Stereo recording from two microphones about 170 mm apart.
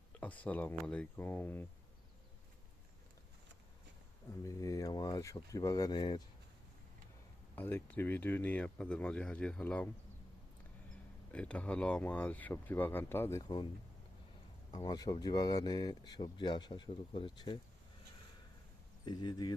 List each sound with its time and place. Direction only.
0.2 s speech: 10° left (ahead or behind)
4.4 s speech: 20° left (ahead or behind)
7.5 s speech: 10° left (ahead or behind)
11.3 s speech: 5° left (ahead or behind)
14.7 s speech: 25° left (ahead or behind)
19.0 s speech: 25° left (ahead or behind)